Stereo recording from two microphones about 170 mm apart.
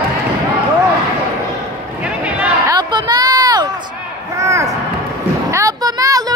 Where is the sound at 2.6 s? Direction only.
25° right (ahead or behind).